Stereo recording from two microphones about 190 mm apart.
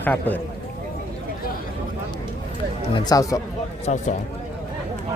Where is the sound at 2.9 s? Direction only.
20° left (ahead or behind).